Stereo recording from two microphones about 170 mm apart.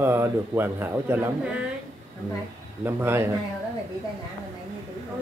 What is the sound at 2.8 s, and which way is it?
Speech, 15° right (ahead or behind).